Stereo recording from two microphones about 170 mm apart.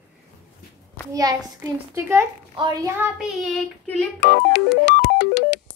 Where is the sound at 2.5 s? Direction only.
25° right (ahead or behind).